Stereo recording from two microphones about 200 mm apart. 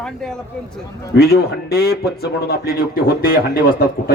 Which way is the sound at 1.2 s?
50° left (ahead or behind).